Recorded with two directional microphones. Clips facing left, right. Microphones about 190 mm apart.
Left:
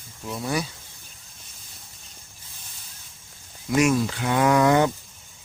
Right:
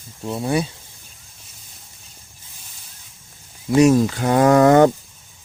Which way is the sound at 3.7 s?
35° right (ahead or behind).